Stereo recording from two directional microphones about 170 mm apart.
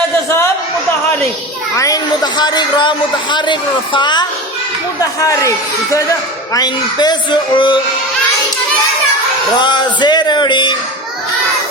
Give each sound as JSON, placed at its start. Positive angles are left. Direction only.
{"t": 1.7, "sound": "speech", "side_deg": 20}
{"t": 9.6, "sound": "speech", "side_deg": 25}